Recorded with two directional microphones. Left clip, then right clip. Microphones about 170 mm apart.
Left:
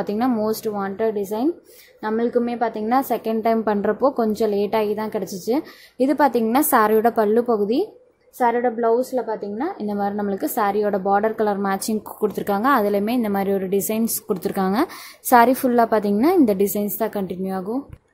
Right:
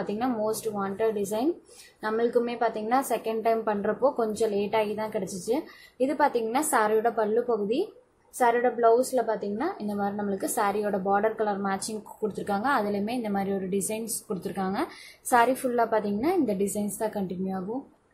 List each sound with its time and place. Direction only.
0.0 s a woman's voice: 50° left (ahead or behind)
8.4 s a woman's voice: 35° left (ahead or behind); by 17.6 s 50° left (ahead or behind)